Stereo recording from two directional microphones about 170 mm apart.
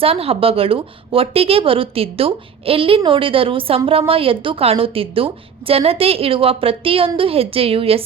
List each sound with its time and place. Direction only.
0.0 s a woman's voice: 35° right (ahead or behind)